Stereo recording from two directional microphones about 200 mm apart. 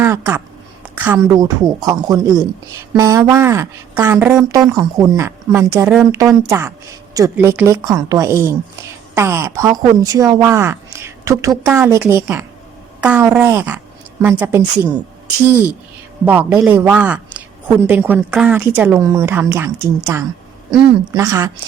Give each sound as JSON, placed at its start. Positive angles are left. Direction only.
{"t": 0.0, "sound": "a man's voice", "side_deg": -15}
{"t": 13.0, "sound": "a sound", "side_deg": -5}
{"t": 13.3, "sound": "a man's voice", "side_deg": -10}
{"t": 16.2, "sound": "a man's voice", "side_deg": -10}